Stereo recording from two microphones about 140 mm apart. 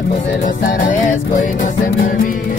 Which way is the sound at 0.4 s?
80° left.